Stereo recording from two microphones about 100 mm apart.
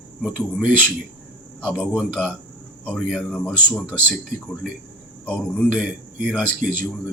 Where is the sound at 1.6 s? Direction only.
10° left (ahead or behind).